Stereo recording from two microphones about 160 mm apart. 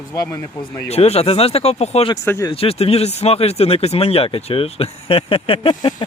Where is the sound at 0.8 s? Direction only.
40° left (ahead or behind).